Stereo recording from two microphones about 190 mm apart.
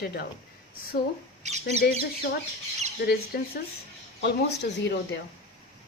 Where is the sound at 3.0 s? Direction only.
55° left (ahead or behind).